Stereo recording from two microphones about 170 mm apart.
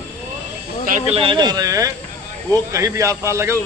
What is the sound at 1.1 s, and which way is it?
A man's voice, 30° right (ahead or behind).